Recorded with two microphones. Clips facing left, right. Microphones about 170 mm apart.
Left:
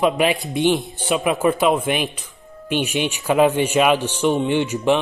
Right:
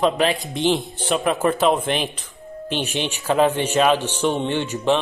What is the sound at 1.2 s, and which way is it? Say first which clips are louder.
Speech: left 1 dB; 10° left (ahead or behind).